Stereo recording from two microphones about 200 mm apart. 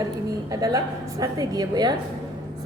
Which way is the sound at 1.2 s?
20° right (ahead or behind).